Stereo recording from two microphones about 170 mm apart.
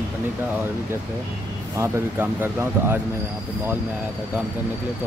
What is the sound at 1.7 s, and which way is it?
Speech, 15° right (ahead or behind).